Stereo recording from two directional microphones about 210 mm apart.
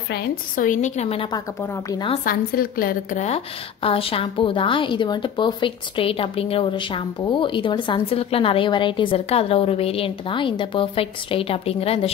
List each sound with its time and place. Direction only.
0.1 s a woman's voice: 40° left (ahead or behind); by 2.1 s 20° left (ahead or behind)
2.2 s a woman's voice: 45° left (ahead or behind)
3.8 s speech: 25° left (ahead or behind)